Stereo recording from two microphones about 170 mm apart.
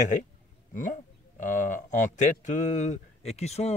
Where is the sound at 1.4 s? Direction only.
50° left (ahead or behind).